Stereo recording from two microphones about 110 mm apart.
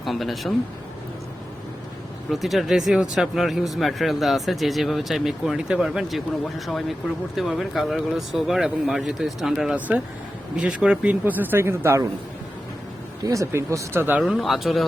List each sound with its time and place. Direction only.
0.0 s speech: centre (ahead or behind)
2.3 s speech: centre (ahead or behind)
9.7 s speech: 15° right (ahead or behind)
13.2 s speech: 30° right (ahead or behind)
14.2 s speech: centre (ahead or behind)